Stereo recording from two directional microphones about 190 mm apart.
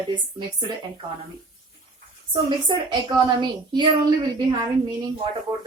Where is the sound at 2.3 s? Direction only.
25° right (ahead or behind).